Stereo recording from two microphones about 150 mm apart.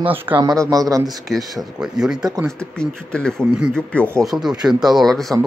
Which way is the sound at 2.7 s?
5° left (ahead or behind).